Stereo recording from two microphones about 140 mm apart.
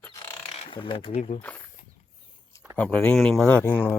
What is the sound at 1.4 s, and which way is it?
Speech, 10° left (ahead or behind).